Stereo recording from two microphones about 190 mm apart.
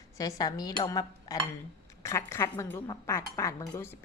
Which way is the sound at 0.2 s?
20° left (ahead or behind).